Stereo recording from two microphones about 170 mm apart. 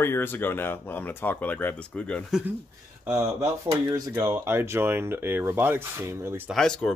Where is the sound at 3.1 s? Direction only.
15° right (ahead or behind).